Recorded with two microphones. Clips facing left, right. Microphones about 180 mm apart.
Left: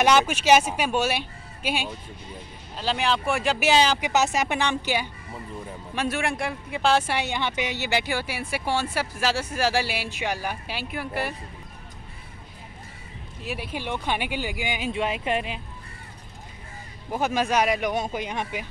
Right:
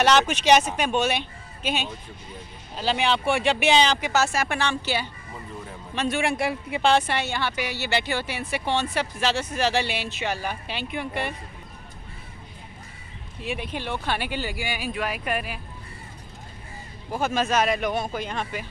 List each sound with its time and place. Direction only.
0.0 s a woman's voice: 10° left (ahead or behind)
2.7 s a woman's voice: centre (ahead or behind); by 5.1 s 15° left (ahead or behind)
5.9 s a woman's voice: 5° left (ahead or behind)
13.4 s a woman's voice: 5° left (ahead or behind); by 15.6 s 25° left (ahead or behind)
17.1 s a woman's voice: 15° left (ahead or behind)